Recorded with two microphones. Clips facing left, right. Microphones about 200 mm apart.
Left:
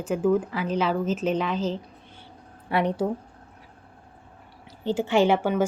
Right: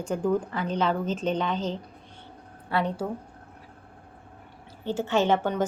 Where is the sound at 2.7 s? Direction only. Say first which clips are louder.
Left 3 dB; 20° left (ahead or behind).